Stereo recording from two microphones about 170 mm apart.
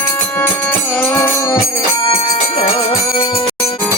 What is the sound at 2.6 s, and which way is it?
Music, 35° left (ahead or behind).